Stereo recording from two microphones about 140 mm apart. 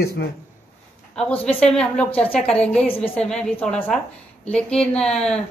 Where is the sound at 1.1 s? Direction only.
10° left (ahead or behind).